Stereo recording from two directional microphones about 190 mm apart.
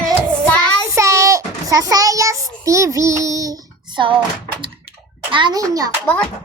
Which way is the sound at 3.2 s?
20° right (ahead or behind).